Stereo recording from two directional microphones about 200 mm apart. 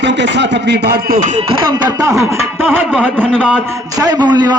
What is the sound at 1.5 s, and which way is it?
Music, 20° right (ahead or behind).